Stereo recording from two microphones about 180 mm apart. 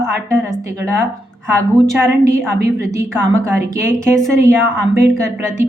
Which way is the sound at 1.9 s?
15° right (ahead or behind).